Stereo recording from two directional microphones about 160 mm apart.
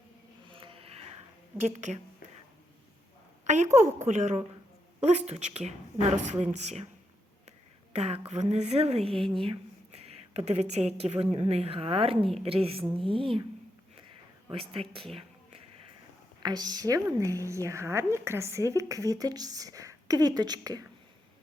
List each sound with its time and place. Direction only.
0.5 s a sound: 35° right (ahead or behind)
3.4 s a sound: 50° right (ahead or behind)
4.0 s speech: 45° right (ahead or behind)
7.9 s a woman's voice: 40° right (ahead or behind)
14.5 s a woman's voice: 35° right (ahead or behind)
16.4 s a woman's voice: 25° right (ahead or behind)